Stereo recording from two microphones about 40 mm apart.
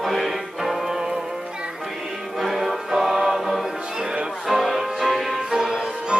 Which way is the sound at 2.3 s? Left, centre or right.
Centre.